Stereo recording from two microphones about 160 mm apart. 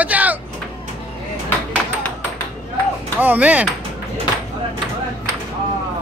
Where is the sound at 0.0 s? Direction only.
10° right (ahead or behind).